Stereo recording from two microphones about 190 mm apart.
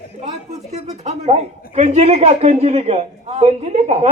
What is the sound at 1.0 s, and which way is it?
Speech, 35° right (ahead or behind).